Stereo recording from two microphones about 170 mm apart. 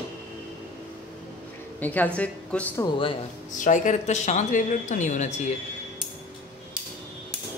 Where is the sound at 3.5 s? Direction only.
50° left (ahead or behind).